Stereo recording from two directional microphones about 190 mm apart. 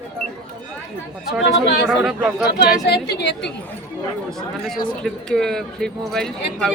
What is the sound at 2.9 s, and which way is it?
Speech, 60° left (ahead or behind).